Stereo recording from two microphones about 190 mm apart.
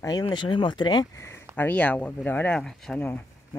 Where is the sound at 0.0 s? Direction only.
20° left (ahead or behind).